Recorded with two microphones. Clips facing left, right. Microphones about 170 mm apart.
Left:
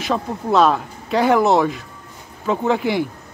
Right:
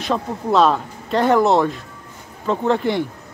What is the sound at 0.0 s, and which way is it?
Speech, centre (ahead or behind).